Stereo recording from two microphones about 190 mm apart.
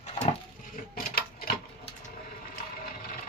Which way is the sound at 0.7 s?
50° left (ahead or behind).